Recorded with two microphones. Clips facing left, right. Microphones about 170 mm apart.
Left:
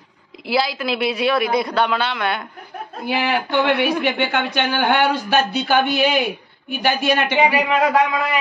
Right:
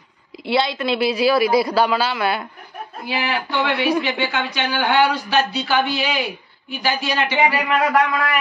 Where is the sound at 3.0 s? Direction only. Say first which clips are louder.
Left 3 dB; 55° left (ahead or behind).